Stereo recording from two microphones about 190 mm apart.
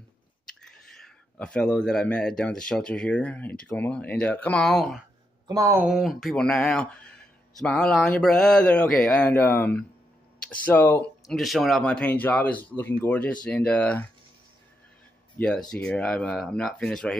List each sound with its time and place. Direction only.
0.6 s speech: 5° left (ahead or behind)
5.5 s speech: 15° right (ahead or behind)
5.9 s speech: centre (ahead or behind)
15.3 s speech: 5° left (ahead or behind)